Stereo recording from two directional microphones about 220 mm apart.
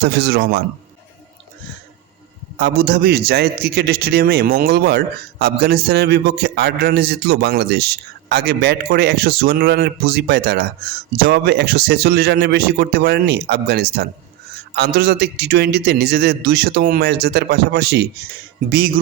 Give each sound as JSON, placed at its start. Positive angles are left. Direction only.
{"t": 0.0, "sound": "a man's voice", "side_deg": -45}
{"t": 2.6, "sound": "a man's voice", "side_deg": -45}